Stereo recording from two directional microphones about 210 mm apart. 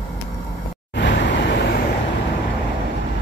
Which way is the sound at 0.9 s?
55° left (ahead or behind).